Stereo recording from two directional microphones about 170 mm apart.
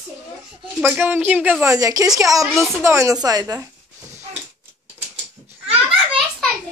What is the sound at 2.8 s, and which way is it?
Speech, 15° right (ahead or behind).